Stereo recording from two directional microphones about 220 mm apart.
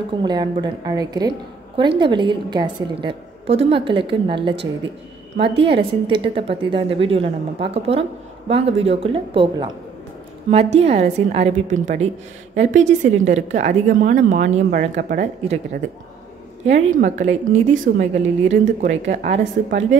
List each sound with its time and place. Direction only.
0.2 s a woman's voice: 20° right (ahead or behind); by 19.8 s 35° right (ahead or behind)